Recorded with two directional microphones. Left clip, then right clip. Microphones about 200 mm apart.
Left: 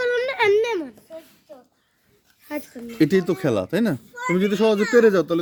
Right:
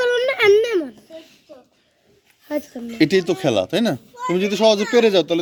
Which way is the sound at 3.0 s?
45° left (ahead or behind).